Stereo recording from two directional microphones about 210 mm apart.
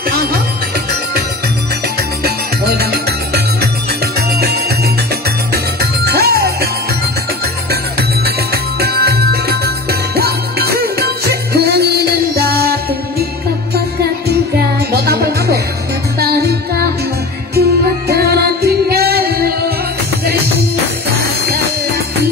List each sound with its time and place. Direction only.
0.1 s music: 45° right (ahead or behind)
2.2 s music: 50° right (ahead or behind)
5.5 s music: 50° right (ahead or behind)
8.7 s music: 50° right (ahead or behind)
14.9 s music: 50° right (ahead or behind)